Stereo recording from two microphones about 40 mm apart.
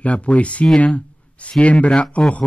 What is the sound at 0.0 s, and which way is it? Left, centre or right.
Speech, left.